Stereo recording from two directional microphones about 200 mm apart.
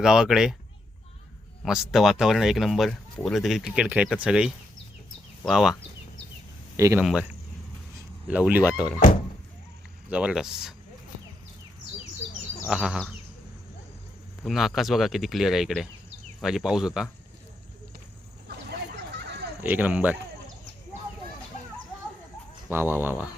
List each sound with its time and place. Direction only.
0.0 s speech: 5° right (ahead or behind)
1.6 s speech: centre (ahead or behind)
6.7 s speech: 15° right (ahead or behind)
7.0 s speech: centre (ahead or behind)
8.3 s speech: 5° right (ahead or behind)
10.1 s speech: 5° right (ahead or behind)
12.6 s speech: 5° right (ahead or behind)
14.4 s speech: centre (ahead or behind)
19.1 s a sound: 55° right (ahead or behind)
19.6 s speech: 10° right (ahead or behind)
22.7 s speech: 10° right (ahead or behind)